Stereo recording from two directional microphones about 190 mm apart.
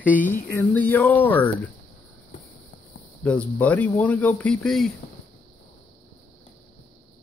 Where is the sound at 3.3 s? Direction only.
5° left (ahead or behind).